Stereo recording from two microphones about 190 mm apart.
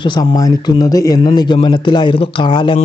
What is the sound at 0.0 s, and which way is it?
Speech, 25° left (ahead or behind).